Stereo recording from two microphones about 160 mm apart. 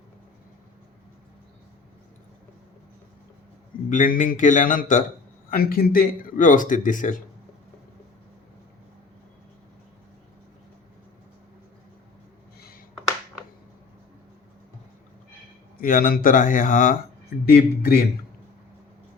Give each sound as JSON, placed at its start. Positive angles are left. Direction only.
{"t": 3.8, "sound": "speech", "side_deg": 55}
{"t": 5.5, "sound": "speech", "side_deg": 70}
{"t": 12.5, "sound": "a sound", "side_deg": 70}
{"t": 15.8, "sound": "speech", "side_deg": 65}